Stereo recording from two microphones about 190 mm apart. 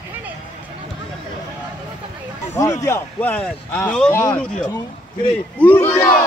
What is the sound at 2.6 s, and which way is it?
Speech, 15° left (ahead or behind).